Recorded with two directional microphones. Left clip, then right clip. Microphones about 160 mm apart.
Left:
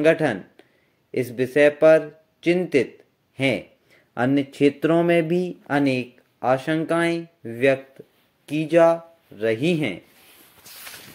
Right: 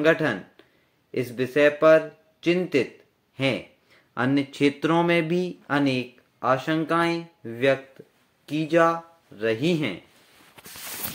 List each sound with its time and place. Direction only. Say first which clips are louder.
0.0 s speech: left 2 dB; 20° left (ahead or behind)